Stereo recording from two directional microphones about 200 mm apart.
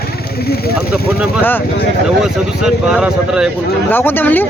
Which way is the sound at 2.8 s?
5° right (ahead or behind).